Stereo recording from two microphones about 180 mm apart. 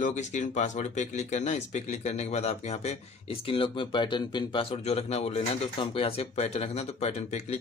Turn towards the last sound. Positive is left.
turn(degrees=35)  # may be behind; listen again after turning